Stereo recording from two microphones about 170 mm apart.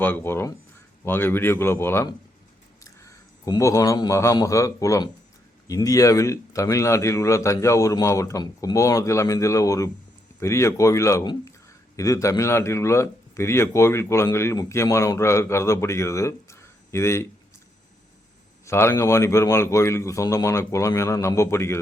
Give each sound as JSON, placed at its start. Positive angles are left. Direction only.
{"t": 0.0, "sound": "a man's voice", "side_deg": 10}
{"t": 18.6, "sound": "a man's voice", "side_deg": 15}